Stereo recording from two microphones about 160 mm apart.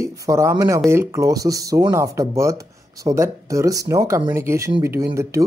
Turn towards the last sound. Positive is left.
turn(degrees=-15)  # may be behind; listen again after turning